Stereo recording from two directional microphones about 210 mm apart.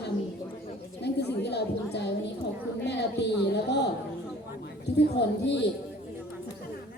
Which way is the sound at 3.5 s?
55° left (ahead or behind).